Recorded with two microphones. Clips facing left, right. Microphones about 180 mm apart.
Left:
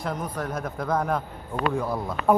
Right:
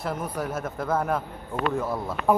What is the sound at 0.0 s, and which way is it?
A man's voice, 5° right (ahead or behind).